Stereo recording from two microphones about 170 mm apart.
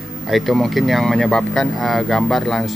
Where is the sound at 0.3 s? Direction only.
Centre (ahead or behind).